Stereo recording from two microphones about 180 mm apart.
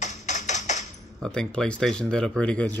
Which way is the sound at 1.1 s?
5° left (ahead or behind).